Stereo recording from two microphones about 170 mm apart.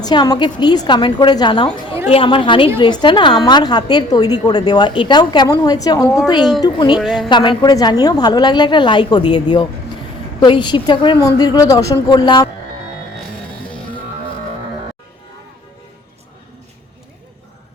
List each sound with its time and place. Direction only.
0.0 s a woman's voice: 25° left (ahead or behind)